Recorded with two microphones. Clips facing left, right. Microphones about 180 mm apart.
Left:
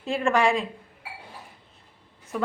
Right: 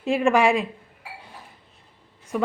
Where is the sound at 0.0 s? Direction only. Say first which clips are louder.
Right 4 dB; 15° right (ahead or behind).